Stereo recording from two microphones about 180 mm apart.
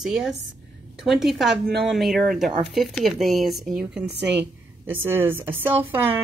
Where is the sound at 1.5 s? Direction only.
65° right (ahead or behind).